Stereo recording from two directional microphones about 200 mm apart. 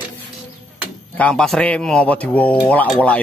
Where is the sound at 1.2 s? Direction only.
5° left (ahead or behind).